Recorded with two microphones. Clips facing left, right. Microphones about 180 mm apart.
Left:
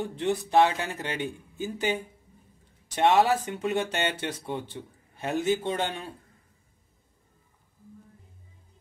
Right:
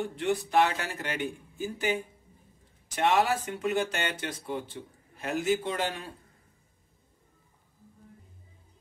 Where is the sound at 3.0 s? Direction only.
30° left (ahead or behind).